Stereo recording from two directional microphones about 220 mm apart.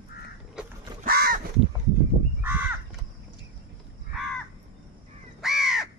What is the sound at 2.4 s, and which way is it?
Crow, 10° right (ahead or behind).